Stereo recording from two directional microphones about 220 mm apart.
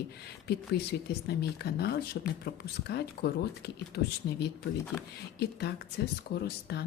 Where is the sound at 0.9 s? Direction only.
45° left (ahead or behind).